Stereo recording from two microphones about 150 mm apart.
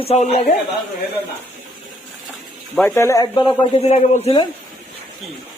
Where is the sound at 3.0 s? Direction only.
20° left (ahead or behind); by 4.3 s 45° left (ahead or behind).